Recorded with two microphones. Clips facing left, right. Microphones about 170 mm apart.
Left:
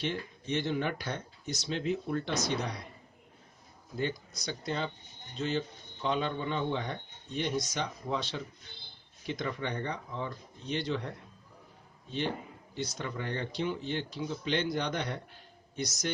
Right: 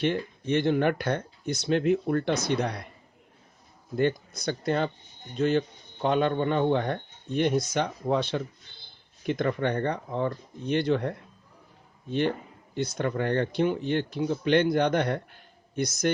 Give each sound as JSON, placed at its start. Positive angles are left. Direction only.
{"t": 0.0, "sound": "speech", "side_deg": -60}
{"t": 3.9, "sound": "speech", "side_deg": -60}